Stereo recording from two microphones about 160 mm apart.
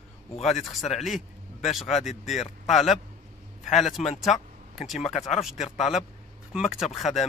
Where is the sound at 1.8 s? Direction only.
45° left (ahead or behind).